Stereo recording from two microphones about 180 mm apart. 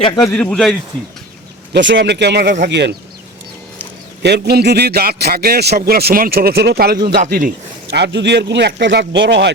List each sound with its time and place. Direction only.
0.3 s a man's voice: 10° left (ahead or behind)
0.5 s a man's voice: centre (ahead or behind)
1.7 s speech: 80° right
4.2 s a man's voice: 65° right (ahead or behind)
7.9 s speech: 75° right (ahead or behind)